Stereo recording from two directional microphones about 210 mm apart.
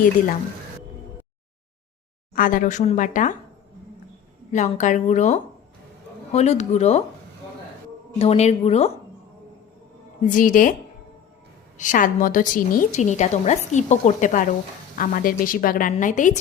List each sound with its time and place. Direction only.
2.3 s a woman's voice: 40° left (ahead or behind)
4.5 s a woman's voice: 35° left (ahead or behind)
8.2 s a woman's voice: 30° left (ahead or behind)
10.2 s a woman's voice: 40° left (ahead or behind)
11.8 s a woman's voice: 40° left (ahead or behind)